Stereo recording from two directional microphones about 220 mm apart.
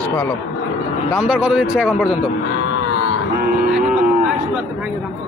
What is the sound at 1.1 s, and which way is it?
Speech, 5° right (ahead or behind).